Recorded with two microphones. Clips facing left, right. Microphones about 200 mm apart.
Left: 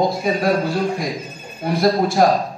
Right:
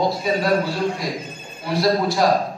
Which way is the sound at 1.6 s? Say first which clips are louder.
Left 2 dB; 50° left (ahead or behind).